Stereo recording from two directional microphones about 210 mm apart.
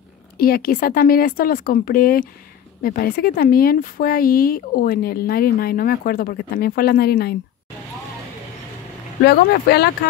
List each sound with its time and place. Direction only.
0.4 s speech: 45° left (ahead or behind)
9.2 s speech: 50° left (ahead or behind)